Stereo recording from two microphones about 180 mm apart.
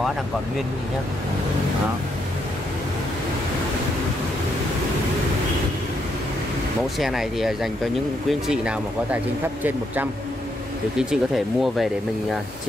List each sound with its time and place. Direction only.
7.0 s speech: centre (ahead or behind)
11.0 s speech: 5° right (ahead or behind)